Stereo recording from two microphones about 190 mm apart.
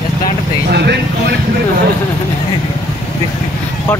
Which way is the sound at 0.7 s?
65° right (ahead or behind).